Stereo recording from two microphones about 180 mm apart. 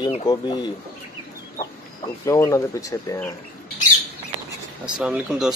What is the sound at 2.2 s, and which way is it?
Speech, 15° left (ahead or behind).